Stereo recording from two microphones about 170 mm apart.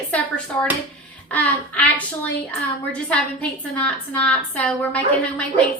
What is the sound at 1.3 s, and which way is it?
A woman's voice, 10° left (ahead or behind).